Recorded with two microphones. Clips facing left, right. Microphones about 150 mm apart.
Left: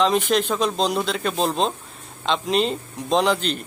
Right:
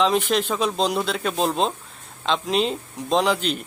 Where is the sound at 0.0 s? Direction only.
Centre (ahead or behind).